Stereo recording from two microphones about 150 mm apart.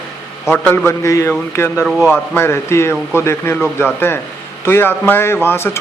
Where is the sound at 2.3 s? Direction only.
15° left (ahead or behind).